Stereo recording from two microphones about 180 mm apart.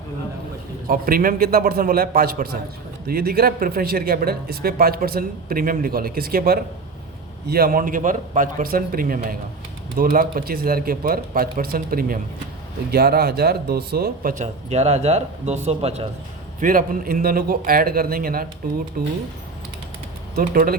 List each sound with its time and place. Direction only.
0.9 s a man's voice: 55° right (ahead or behind); by 16.0 s 35° right (ahead or behind)
16.6 s speech: 50° right (ahead or behind)
20.3 s speech: 50° right (ahead or behind)